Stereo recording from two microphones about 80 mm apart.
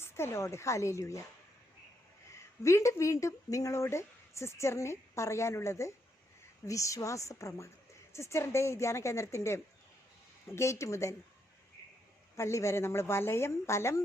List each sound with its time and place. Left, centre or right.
0.0 s speech: left
2.3 s speech: left
12.4 s speech: left